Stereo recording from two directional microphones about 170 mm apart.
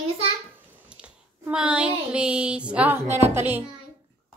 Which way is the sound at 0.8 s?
5° right (ahead or behind).